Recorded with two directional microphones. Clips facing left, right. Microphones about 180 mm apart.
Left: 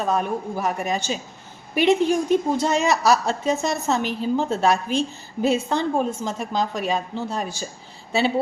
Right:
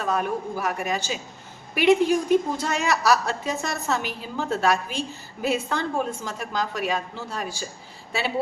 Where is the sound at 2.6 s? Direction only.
25° left (ahead or behind).